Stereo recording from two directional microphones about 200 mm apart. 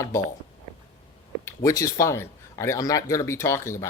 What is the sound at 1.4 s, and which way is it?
Speech, 15° left (ahead or behind).